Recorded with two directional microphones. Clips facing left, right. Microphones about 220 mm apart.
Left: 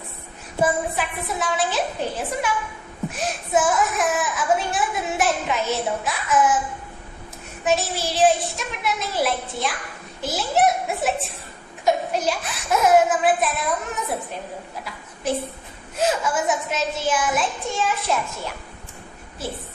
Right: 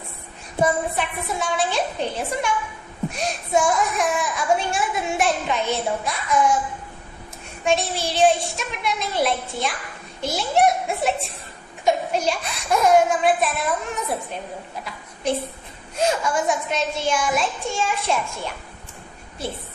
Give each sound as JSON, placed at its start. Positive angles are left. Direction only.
{"t": 0.6, "sound": "speech", "side_deg": 0}
{"t": 7.6, "sound": "speech", "side_deg": 5}
{"t": 15.3, "sound": "speech", "side_deg": 5}